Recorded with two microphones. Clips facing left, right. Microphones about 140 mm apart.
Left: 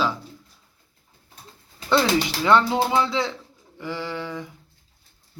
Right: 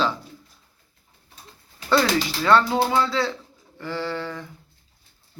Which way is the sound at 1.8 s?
25° left (ahead or behind).